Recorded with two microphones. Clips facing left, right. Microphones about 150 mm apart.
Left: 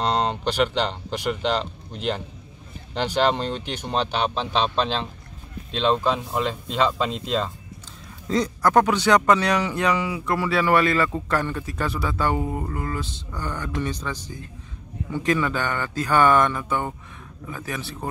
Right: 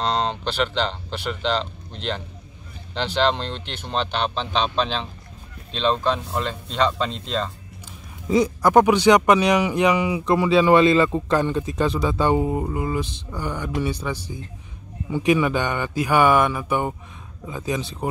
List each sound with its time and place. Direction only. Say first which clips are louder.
0.0 s speech: left 1 dB; 10° left (ahead or behind)
8.3 s speech: right 3 dB; 10° right (ahead or behind)